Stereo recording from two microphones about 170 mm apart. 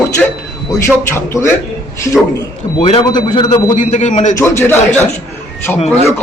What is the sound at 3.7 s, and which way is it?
Speech, 45° left (ahead or behind).